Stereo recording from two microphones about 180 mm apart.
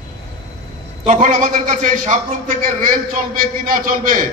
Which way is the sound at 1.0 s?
50° right (ahead or behind).